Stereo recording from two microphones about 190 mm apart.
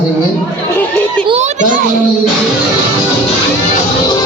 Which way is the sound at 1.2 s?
35° right (ahead or behind).